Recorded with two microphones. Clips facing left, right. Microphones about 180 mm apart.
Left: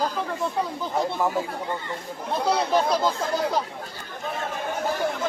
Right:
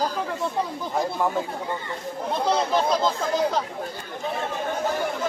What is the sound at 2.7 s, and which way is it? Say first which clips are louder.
Speech: even; 10° left (ahead or behind).